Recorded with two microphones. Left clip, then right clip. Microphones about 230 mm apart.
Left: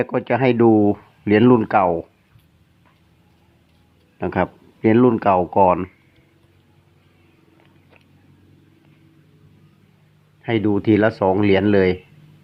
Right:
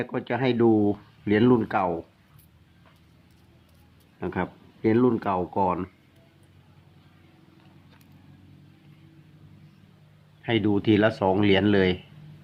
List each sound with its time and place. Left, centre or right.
0.0 s speech: left
4.2 s speech: left
10.4 s speech: centre